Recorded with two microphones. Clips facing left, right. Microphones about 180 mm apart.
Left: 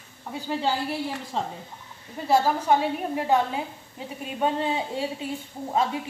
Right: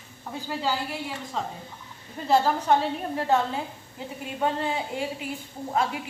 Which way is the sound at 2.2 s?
5° left (ahead or behind).